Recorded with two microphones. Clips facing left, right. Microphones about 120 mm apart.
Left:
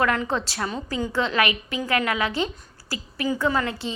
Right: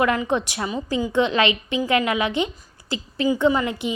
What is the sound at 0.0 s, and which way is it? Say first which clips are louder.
A woman's voice: right 3 dB; 20° right (ahead or behind).